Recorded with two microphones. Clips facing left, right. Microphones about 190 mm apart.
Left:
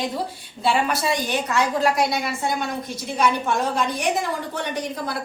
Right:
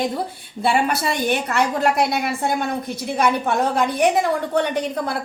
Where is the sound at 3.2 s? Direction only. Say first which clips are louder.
Right 2 dB; 60° right (ahead or behind).